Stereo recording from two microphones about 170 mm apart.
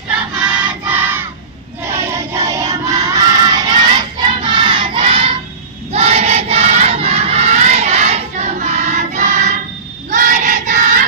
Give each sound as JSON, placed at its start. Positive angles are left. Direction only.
{"t": 0.4, "sound": "music", "side_deg": -5}
{"t": 4.4, "sound": "crowd", "side_deg": -30}
{"t": 10.1, "sound": "child singing", "side_deg": -45}